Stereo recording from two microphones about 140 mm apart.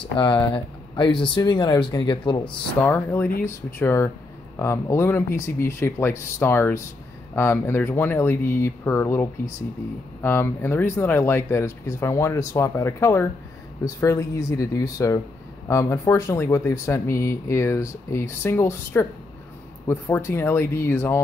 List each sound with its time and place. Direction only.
0.2 s speech: 35° left (ahead or behind)
2.8 s speech: 15° left (ahead or behind)